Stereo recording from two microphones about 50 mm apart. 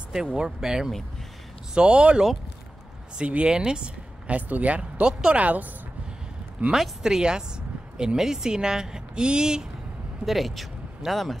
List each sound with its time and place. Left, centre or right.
0.1 s speech: centre
6.7 s speech: centre
10.2 s speech: centre